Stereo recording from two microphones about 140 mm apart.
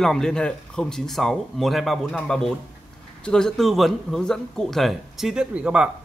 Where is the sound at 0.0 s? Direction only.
5° left (ahead or behind).